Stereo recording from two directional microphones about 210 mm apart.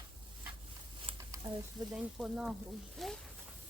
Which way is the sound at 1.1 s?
25° right (ahead or behind).